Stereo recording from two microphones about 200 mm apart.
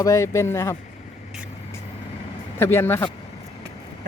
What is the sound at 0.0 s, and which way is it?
Speech, 15° left (ahead or behind).